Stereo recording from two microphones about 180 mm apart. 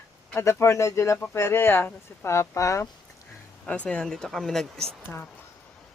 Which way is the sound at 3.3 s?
5° left (ahead or behind).